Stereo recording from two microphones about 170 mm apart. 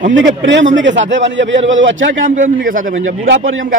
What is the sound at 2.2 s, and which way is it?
Speech, 55° right (ahead or behind).